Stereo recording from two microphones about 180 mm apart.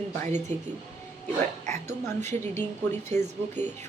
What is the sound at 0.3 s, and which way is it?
Speech, 40° right (ahead or behind).